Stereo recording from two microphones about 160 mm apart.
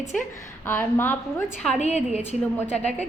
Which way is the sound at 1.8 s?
45° left (ahead or behind).